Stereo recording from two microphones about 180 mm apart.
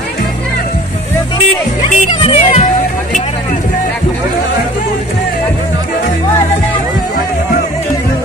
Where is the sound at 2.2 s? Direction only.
35° left (ahead or behind).